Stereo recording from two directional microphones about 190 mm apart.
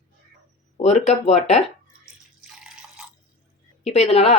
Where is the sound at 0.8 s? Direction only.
35° left (ahead or behind).